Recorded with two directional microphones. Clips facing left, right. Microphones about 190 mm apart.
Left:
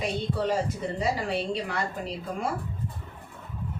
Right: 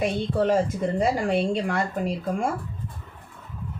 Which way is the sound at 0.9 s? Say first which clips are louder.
Right 6 dB; 50° right (ahead or behind).